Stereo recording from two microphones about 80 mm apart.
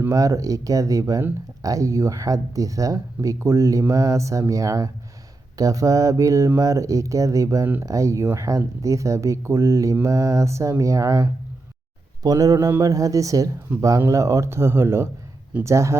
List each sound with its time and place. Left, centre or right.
0.1 s speech: right